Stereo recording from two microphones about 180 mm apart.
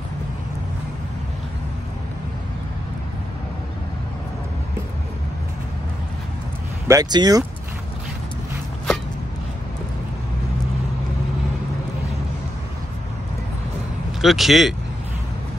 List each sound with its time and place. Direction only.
6.9 s speech: 20° right (ahead or behind)
14.2 s speech: centre (ahead or behind)